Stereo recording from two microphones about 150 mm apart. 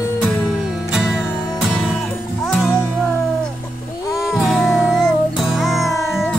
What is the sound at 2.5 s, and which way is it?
Music, centre (ahead or behind).